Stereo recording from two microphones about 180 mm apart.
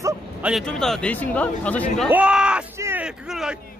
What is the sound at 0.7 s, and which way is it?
Speech, 5° left (ahead or behind).